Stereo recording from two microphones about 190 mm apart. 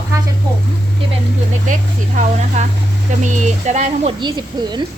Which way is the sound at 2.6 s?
35° right (ahead or behind).